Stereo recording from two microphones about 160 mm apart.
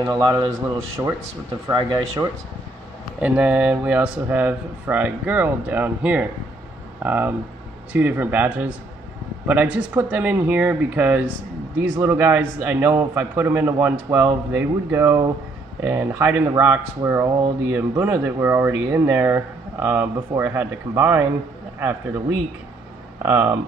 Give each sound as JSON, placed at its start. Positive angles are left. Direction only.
{"t": 0.0, "sound": "speech", "side_deg": -20}
{"t": 3.2, "sound": "speech", "side_deg": -10}
{"t": 23.2, "sound": "speech", "side_deg": -15}